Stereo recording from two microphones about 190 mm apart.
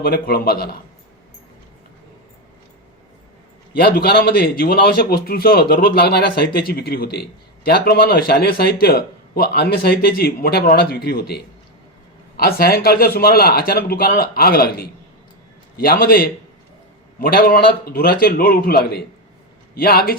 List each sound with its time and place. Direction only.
0.0 s a man's voice: 50° left (ahead or behind)
3.8 s a man's voice: 55° left (ahead or behind)
12.4 s a man's voice: 55° left (ahead or behind)